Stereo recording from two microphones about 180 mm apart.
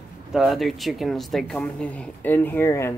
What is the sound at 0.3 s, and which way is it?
Speech, centre (ahead or behind).